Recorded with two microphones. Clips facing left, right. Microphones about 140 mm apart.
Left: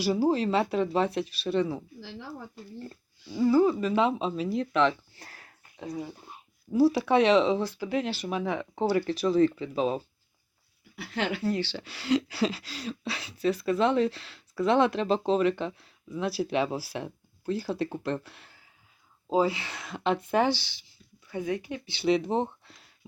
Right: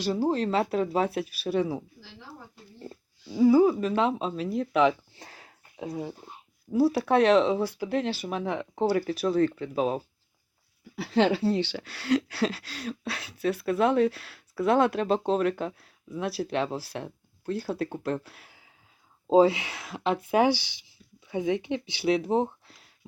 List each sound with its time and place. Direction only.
0.0 s speech: 5° left (ahead or behind); by 1.8 s 10° right (ahead or behind)
2.9 s a sound: 10° right (ahead or behind)
3.8 s speech: centre (ahead or behind)
5.1 s a sound: 20° right (ahead or behind)
6.7 s speech: centre (ahead or behind)
10.9 s speech: 35° right (ahead or behind)
11.8 s speech: centre (ahead or behind)
19.3 s speech: 25° right (ahead or behind)
19.6 s speech: 5° right (ahead or behind); by 22.0 s 20° right (ahead or behind)
22.0 s speech: 5° right (ahead or behind)